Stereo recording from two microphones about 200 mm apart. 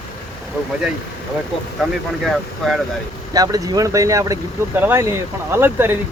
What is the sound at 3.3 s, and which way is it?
Speech, 20° right (ahead or behind).